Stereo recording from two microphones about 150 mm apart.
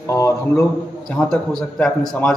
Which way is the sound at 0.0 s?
20° left (ahead or behind).